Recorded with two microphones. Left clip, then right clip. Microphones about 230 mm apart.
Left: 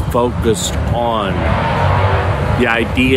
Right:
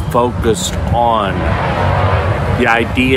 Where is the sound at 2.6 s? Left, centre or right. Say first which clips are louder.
Right 2 dB; centre.